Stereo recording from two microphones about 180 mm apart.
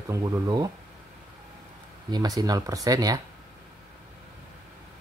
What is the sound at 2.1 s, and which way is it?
Speech, 20° right (ahead or behind).